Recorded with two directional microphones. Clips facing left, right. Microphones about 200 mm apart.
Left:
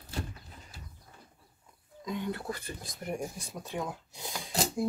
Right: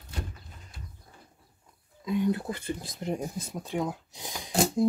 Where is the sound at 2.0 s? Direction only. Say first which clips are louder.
Right 7 dB; 15° right (ahead or behind).